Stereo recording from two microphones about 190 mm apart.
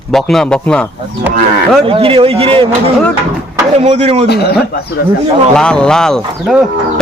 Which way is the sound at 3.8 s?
35° right (ahead or behind).